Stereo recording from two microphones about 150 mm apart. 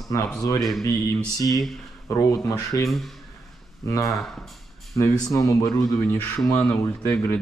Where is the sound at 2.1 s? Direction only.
20° left (ahead or behind).